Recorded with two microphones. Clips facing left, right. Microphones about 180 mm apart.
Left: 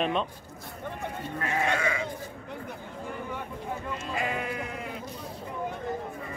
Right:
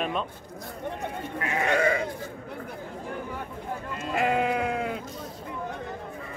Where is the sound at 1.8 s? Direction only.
55° right (ahead or behind).